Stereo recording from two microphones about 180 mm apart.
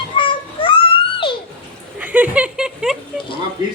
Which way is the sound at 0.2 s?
30° left (ahead or behind).